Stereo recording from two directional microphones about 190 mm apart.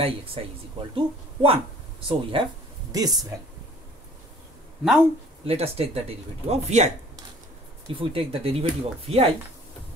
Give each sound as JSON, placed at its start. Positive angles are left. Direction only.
{"t": 0.0, "sound": "speech", "side_deg": -30}
{"t": 5.5, "sound": "speech", "side_deg": -30}
{"t": 7.9, "sound": "speech", "side_deg": -30}